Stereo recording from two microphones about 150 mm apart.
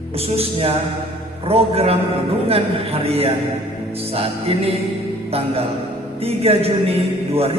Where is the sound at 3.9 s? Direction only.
40° right (ahead or behind).